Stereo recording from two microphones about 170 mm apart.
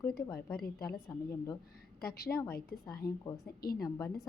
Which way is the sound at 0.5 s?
65° left (ahead or behind).